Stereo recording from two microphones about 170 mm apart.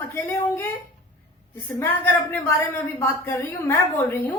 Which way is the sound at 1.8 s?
15° left (ahead or behind).